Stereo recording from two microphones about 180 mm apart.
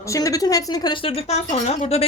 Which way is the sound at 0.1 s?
20° left (ahead or behind).